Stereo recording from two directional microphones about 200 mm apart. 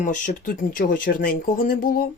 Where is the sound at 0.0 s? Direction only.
40° left (ahead or behind).